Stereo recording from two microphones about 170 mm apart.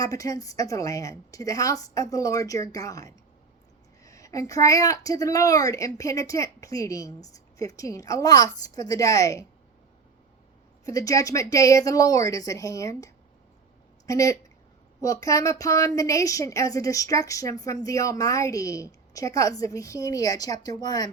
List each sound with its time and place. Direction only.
0.0 s a woman's voice: 20° left (ahead or behind)
10.8 s a woman's voice: 20° left (ahead or behind)